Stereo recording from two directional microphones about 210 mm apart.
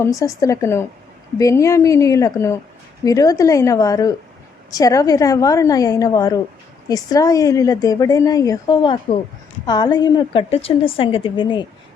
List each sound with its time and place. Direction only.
0.0 s a woman's voice: 15° left (ahead or behind)